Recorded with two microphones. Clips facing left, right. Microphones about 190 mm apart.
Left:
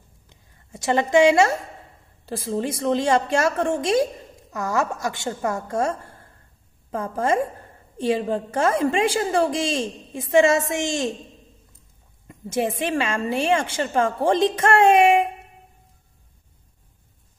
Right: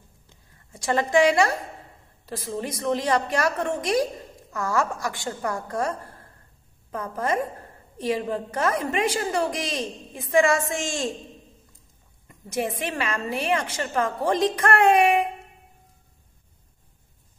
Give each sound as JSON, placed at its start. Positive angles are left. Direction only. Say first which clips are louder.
{"t": 0.7, "sound": "a woman's voice", "louder": "left 3 dB", "side_deg": 20}
{"t": 12.3, "sound": "a woman's voice", "louder": "left 4 dB", "side_deg": 25}